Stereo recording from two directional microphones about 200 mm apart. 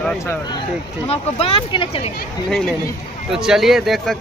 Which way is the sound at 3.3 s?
5° right (ahead or behind).